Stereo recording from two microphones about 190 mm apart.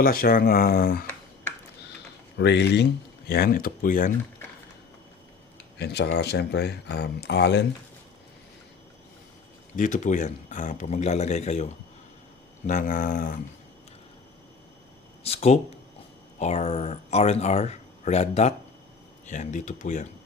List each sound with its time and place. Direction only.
0.0 s speech: 50° left (ahead or behind)
2.4 s speech: 65° left (ahead or behind)
3.2 s speech: 55° left (ahead or behind)
5.8 s speech: 60° left (ahead or behind)
9.7 s speech: 40° left (ahead or behind)
15.2 s speech: 30° left (ahead or behind)